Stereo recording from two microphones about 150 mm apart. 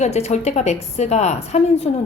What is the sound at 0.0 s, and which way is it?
A woman's voice, 50° left (ahead or behind).